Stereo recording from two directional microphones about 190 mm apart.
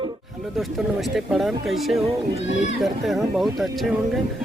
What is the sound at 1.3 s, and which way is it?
Speech, centre (ahead or behind).